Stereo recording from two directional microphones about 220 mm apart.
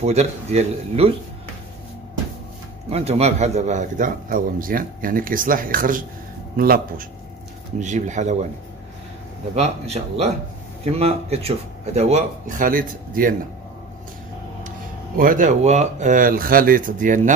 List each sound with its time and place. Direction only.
0.0 s speech: 30° right (ahead or behind)
2.9 s a man's voice: 30° right (ahead or behind)
9.6 s a man's voice: 30° right (ahead or behind)
15.1 s a man's voice: 40° right (ahead or behind)